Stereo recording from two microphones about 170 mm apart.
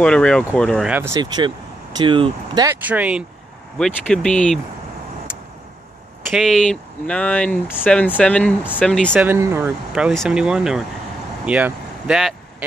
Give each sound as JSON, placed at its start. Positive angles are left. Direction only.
{"t": 0.0, "sound": "speech", "side_deg": 5}
{"t": 0.9, "sound": "speech", "side_deg": -15}
{"t": 1.2, "sound": "speech", "side_deg": -25}
{"t": 2.9, "sound": "speech", "side_deg": -5}
{"t": 3.7, "sound": "speech", "side_deg": 5}
{"t": 6.3, "sound": "speech", "side_deg": 0}
{"t": 9.1, "sound": "speech", "side_deg": -10}
{"t": 11.4, "sound": "vehicle", "side_deg": -5}